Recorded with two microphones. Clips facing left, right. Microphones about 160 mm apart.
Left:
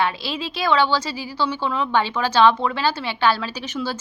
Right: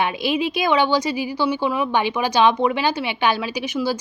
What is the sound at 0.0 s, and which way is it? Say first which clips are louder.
A woman's voice: right 3 dB; 15° right (ahead or behind).